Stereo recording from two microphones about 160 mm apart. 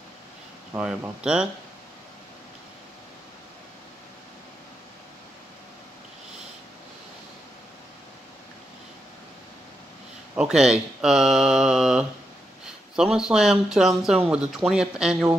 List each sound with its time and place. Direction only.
0.7 s speech: 5° right (ahead or behind)
10.3 s speech: 5° right (ahead or behind)